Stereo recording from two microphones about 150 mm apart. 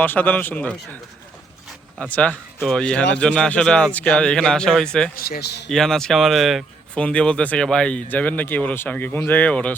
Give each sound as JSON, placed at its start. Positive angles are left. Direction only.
{"t": 0.0, "sound": "speech", "side_deg": 10}
{"t": 2.0, "sound": "a man's voice", "side_deg": 10}
{"t": 5.1, "sound": "a man's voice", "side_deg": 90}
{"t": 5.6, "sound": "speech", "side_deg": 5}